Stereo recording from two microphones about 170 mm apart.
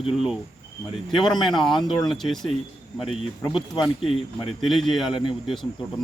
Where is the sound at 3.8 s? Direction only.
35° left (ahead or behind).